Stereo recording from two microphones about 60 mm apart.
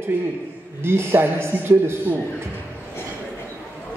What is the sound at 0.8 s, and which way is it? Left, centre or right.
A man's voice, right.